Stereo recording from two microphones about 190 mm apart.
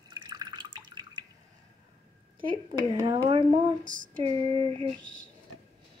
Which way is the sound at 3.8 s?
45° right (ahead or behind).